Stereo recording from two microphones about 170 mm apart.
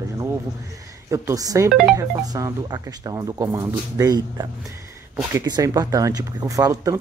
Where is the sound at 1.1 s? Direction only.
20° right (ahead or behind).